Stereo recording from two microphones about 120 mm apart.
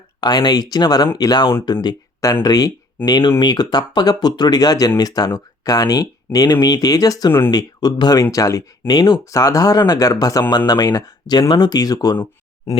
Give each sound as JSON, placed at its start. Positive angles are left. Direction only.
{"t": 0.2, "sound": "speech", "side_deg": 35}